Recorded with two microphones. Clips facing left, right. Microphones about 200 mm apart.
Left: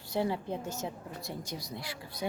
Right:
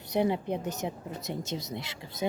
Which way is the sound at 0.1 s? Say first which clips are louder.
Right 4 dB; 20° right (ahead or behind).